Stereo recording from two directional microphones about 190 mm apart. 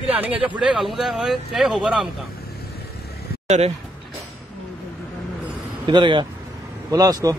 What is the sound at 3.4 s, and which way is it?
Speech, 35° right (ahead or behind).